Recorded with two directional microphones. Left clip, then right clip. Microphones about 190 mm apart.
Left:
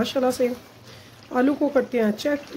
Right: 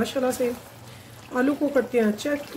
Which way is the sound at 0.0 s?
45° left (ahead or behind).